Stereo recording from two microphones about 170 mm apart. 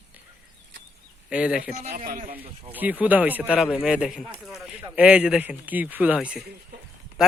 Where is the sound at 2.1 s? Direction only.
55° right (ahead or behind).